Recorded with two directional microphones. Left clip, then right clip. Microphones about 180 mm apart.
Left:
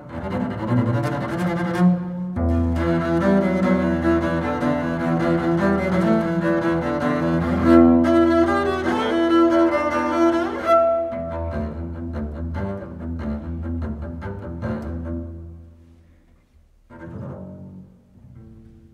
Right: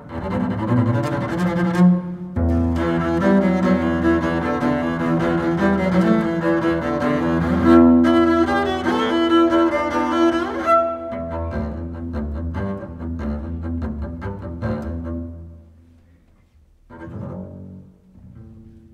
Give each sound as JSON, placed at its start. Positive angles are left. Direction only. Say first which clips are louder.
{"t": 0.1, "sound": "double bass", "louder": "right 2 dB", "side_deg": -35}
{"t": 2.3, "sound": "cello", "louder": "right 2 dB", "side_deg": -35}
{"t": 16.9, "sound": "double bass", "louder": "right 2 dB", "side_deg": -30}